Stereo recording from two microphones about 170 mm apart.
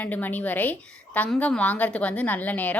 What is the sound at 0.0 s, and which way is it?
A woman's voice, 10° left (ahead or behind).